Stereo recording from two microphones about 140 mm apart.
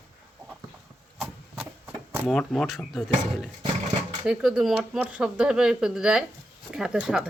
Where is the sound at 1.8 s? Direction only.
15° right (ahead or behind).